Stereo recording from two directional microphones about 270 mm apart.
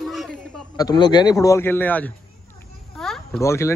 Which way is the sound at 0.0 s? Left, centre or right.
Centre.